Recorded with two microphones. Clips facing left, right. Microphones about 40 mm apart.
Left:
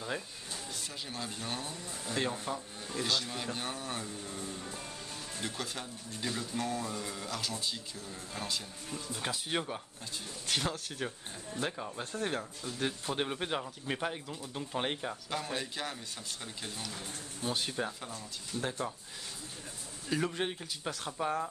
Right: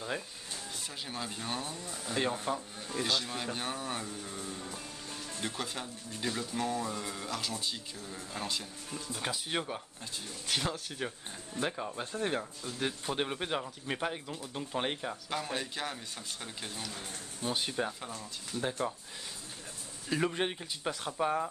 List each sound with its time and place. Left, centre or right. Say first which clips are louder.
1.0 s speech: right 2 dB; centre
20.2 s speech: right 3 dB; centre